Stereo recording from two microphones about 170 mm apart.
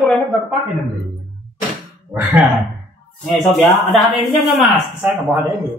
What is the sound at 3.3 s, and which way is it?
Speech, centre (ahead or behind).